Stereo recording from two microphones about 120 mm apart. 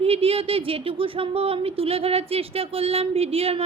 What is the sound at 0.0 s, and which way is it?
A woman's voice, 55° right (ahead or behind).